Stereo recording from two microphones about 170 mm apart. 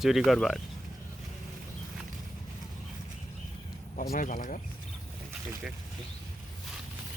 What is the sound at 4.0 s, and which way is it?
Speech, 50° left (ahead or behind).